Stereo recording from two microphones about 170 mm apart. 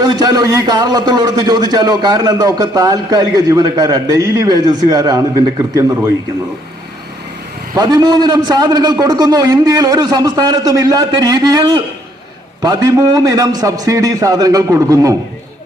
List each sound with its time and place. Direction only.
0.0 s a man's voice: 25° right (ahead or behind)
7.8 s a man's voice: 25° right (ahead or behind)